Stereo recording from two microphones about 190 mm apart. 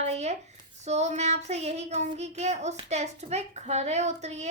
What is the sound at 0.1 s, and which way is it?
A child's voice, 35° right (ahead or behind).